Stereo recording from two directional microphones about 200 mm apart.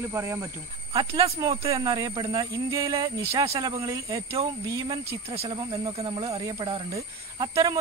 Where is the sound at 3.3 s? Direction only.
30° right (ahead or behind).